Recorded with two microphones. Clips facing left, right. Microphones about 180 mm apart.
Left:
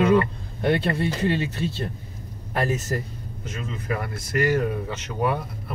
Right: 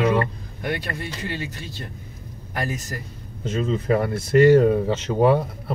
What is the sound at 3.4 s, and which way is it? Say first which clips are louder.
Speech: right 9 dB; 30° right (ahead or behind).